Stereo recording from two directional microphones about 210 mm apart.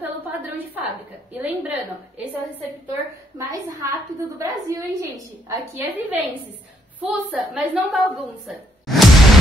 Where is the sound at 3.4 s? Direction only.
15° right (ahead or behind).